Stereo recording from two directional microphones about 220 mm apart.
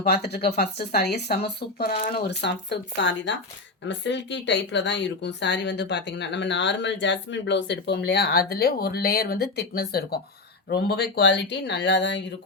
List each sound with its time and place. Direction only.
0.0 s speech: 50° left (ahead or behind)
1.9 s speech: 30° left (ahead or behind)
2.2 s speech: 50° left (ahead or behind)